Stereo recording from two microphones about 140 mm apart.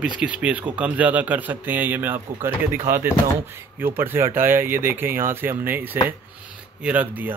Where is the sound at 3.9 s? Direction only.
15° right (ahead or behind).